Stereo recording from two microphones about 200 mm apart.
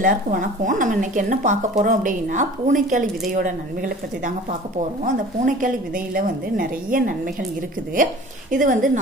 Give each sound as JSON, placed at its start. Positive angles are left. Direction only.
{"t": 0.0, "sound": "speech", "side_deg": -45}
{"t": 5.0, "sound": "a woman's voice", "side_deg": -40}